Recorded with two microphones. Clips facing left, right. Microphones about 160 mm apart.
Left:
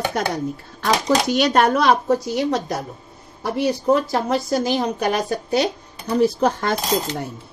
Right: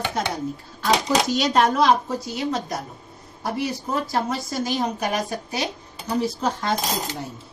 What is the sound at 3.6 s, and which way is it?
Speech, 65° left (ahead or behind).